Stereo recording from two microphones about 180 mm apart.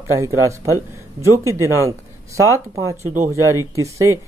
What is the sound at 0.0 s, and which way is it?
Speech, 15° right (ahead or behind).